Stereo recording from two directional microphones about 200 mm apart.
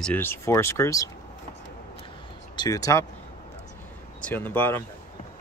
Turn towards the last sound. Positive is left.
turn(degrees=10)  # may be behind; listen again after turning